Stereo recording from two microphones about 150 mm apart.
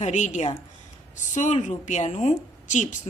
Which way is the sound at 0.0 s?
55° left (ahead or behind).